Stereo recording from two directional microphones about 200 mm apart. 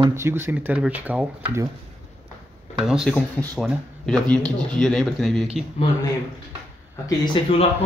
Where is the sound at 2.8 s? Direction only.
Centre (ahead or behind).